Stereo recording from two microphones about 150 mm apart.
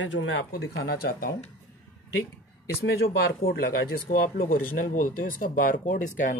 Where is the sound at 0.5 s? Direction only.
90° left.